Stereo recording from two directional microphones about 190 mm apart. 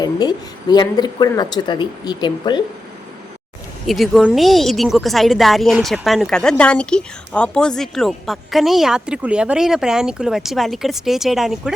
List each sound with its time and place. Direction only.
0.0 s speech: 20° left (ahead or behind)
3.8 s speech: centre (ahead or behind)